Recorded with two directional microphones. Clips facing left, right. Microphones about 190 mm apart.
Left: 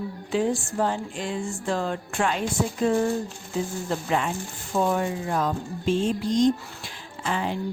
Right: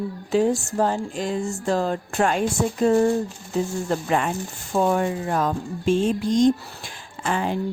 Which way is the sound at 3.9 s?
50° right (ahead or behind).